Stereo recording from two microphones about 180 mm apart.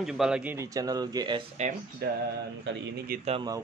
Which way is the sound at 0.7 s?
20° right (ahead or behind).